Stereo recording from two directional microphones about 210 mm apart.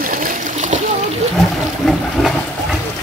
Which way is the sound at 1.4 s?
Centre (ahead or behind).